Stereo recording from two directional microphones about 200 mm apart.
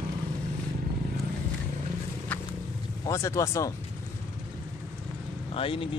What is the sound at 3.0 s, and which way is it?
Speech, 15° left (ahead or behind).